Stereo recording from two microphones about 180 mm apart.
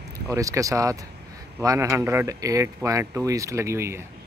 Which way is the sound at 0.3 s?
20° right (ahead or behind).